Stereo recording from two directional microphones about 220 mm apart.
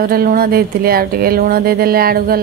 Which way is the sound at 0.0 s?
40° right (ahead or behind).